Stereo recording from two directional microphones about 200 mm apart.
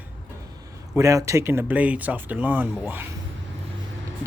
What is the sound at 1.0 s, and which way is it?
Speech, 15° right (ahead or behind).